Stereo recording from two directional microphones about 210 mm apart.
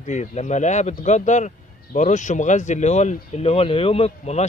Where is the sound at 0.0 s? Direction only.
35° left (ahead or behind).